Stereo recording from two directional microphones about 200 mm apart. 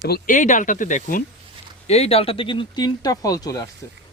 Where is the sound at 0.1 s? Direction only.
40° left (ahead or behind); by 3.7 s 20° left (ahead or behind).